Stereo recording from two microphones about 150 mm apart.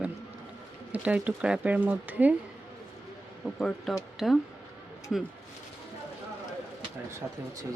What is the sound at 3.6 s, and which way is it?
Speech, 5° left (ahead or behind).